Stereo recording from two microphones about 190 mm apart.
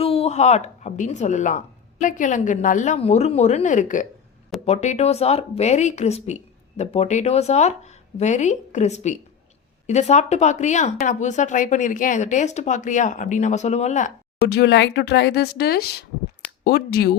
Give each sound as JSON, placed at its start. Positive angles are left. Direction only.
{"t": 0.0, "sound": "speech", "side_deg": 30}
{"t": 14.4, "sound": "speech", "side_deg": 60}